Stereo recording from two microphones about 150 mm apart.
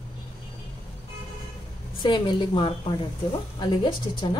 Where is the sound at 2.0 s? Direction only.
30° left (ahead or behind).